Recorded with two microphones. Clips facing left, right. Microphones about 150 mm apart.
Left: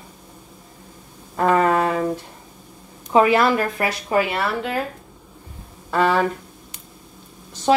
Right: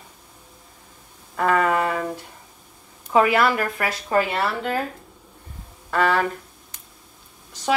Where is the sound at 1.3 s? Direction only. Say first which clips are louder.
Left 3 dB; 30° left (ahead or behind).